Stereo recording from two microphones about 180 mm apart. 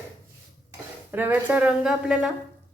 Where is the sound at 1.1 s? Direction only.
10° right (ahead or behind).